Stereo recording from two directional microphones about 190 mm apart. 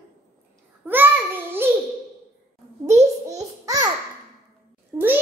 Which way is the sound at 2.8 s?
15° right (ahead or behind).